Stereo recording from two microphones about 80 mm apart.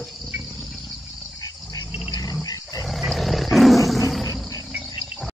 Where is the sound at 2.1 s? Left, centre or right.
Left.